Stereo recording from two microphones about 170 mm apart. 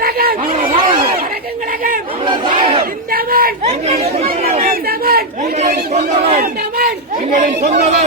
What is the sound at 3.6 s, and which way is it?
Speech, 40° right (ahead or behind).